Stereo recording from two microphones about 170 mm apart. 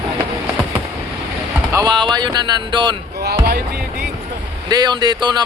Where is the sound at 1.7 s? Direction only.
25° right (ahead or behind).